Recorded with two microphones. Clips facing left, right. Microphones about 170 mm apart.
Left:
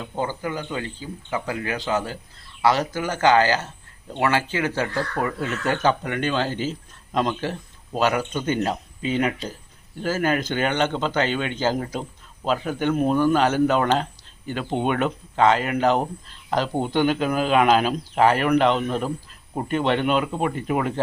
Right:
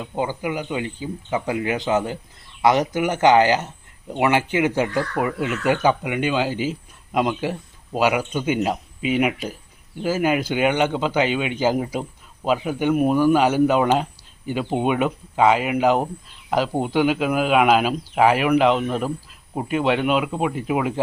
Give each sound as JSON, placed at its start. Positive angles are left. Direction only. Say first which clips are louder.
{"t": 0.2, "sound": "speech", "louder": "right 2 dB", "side_deg": -15}